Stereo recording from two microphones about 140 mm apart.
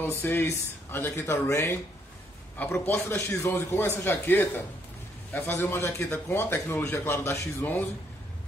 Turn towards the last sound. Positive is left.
turn(degrees=15)  # may be behind; listen again after turning